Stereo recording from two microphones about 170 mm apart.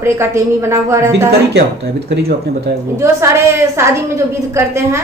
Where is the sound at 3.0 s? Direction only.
15° right (ahead or behind).